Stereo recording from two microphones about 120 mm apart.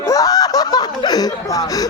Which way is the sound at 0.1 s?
30° left (ahead or behind).